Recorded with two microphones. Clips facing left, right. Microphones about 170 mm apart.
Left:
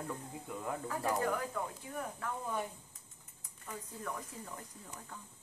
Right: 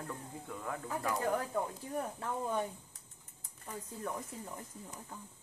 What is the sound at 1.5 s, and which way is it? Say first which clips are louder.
Speech: right 4 dB; 30° right (ahead or behind).